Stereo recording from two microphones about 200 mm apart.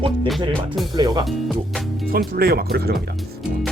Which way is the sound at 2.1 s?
50° right (ahead or behind).